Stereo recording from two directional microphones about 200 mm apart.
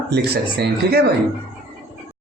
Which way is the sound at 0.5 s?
55° right (ahead or behind).